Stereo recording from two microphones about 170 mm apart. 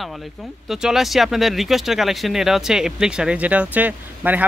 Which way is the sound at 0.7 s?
5° right (ahead or behind).